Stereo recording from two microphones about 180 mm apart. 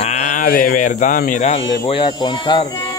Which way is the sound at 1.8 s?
25° left (ahead or behind).